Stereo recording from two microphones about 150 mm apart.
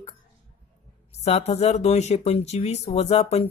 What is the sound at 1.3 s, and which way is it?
Speech, 45° left (ahead or behind).